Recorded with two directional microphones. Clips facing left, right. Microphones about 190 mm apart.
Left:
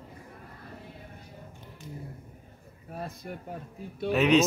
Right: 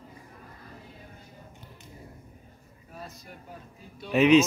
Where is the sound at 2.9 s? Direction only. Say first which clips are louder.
Left 6 dB; 55° left (ahead or behind).